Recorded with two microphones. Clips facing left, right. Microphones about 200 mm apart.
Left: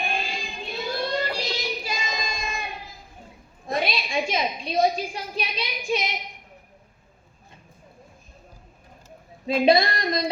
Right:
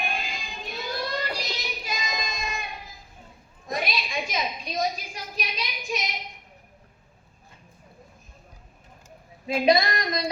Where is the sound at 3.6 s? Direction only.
30° left (ahead or behind).